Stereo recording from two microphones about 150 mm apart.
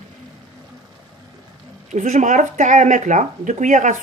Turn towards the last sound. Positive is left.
turn(degrees=-55)  # may be behind; listen again after turning